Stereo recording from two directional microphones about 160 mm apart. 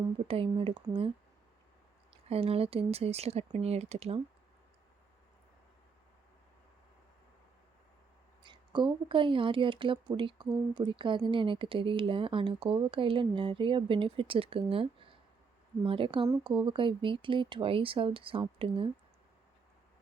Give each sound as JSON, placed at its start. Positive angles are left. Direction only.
{"t": 0.3, "sound": "speech", "side_deg": -35}
{"t": 2.3, "sound": "speech", "side_deg": -40}
{"t": 8.4, "sound": "speech", "side_deg": -30}